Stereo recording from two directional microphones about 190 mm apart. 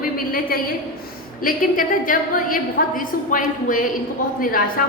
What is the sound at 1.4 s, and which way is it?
A woman's voice, 45° left (ahead or behind).